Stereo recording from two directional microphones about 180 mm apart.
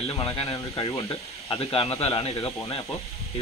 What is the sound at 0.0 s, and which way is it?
Speech, 35° left (ahead or behind).